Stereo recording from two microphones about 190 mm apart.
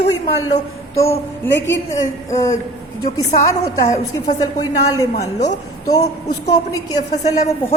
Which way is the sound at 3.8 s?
40° left (ahead or behind).